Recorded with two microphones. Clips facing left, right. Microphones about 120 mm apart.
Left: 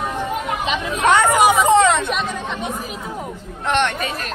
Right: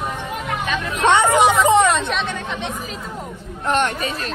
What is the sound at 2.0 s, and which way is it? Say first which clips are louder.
Speech: left 1 dB; 5° left (ahead or behind).